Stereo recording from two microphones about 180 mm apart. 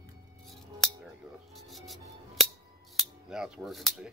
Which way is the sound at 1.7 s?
Centre (ahead or behind).